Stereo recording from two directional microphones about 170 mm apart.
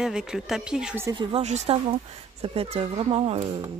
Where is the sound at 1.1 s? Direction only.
30° right (ahead or behind).